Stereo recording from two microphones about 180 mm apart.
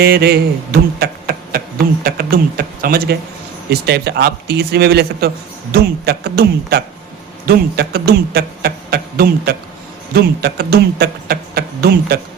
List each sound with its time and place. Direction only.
0.0 s a man's voice: 60° right (ahead or behind)
0.9 s a sound: 60° right (ahead or behind)
2.0 s a man's voice: 55° right (ahead or behind)